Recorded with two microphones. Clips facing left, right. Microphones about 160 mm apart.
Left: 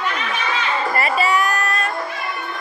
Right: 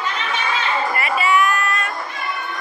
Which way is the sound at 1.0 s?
35° left (ahead or behind).